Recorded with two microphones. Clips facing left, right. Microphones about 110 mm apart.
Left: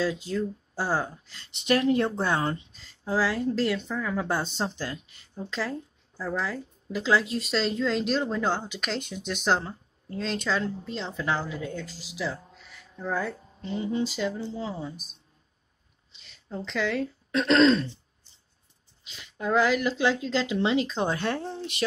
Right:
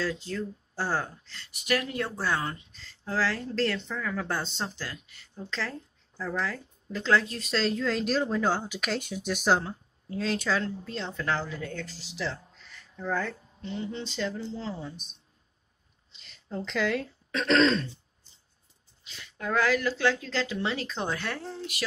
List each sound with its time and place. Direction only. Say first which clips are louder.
0.0 s speech: left 4 dB; 15° left (ahead or behind)
1.5 s speech: left 7 dB; 25° left (ahead or behind)
2.7 s speech: left 4 dB; 15° left (ahead or behind)
19.0 s speech: left 4 dB; 20° left (ahead or behind)